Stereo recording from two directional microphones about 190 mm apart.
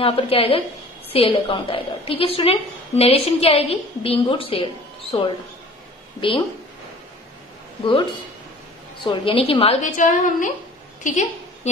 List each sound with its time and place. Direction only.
0.0 s a woman's voice: 30° left (ahead or behind)
9.0 s a woman's voice: 30° left (ahead or behind)